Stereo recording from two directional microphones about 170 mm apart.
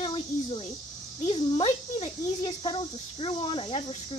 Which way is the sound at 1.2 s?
35° left (ahead or behind).